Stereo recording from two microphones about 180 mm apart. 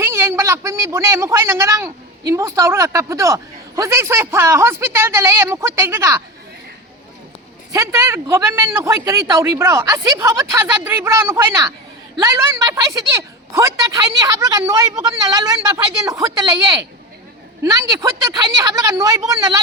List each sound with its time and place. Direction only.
0.0 s a woman's voice: 15° right (ahead or behind)
7.7 s speech: 15° right (ahead or behind)